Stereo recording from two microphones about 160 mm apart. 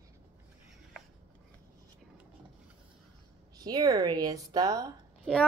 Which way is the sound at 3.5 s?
25° right (ahead or behind).